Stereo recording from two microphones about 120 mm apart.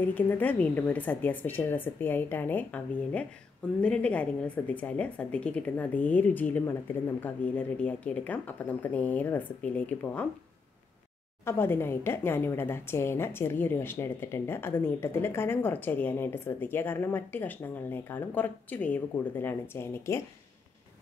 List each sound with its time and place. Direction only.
0.0 s a woman's voice: 15° left (ahead or behind)
11.4 s a woman's voice: 20° left (ahead or behind)